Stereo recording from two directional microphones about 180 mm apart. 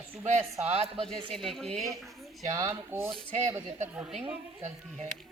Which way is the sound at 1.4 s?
Centre (ahead or behind).